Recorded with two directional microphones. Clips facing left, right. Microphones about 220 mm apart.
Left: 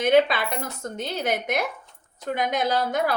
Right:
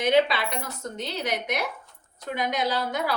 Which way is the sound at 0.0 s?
50° left (ahead or behind).